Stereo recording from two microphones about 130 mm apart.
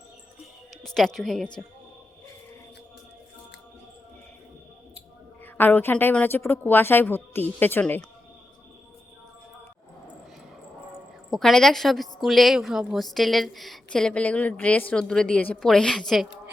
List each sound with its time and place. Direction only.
0.8 s a woman's voice: centre (ahead or behind)
5.5 s a woman's voice: 15° left (ahead or behind)
11.3 s a woman's voice: centre (ahead or behind)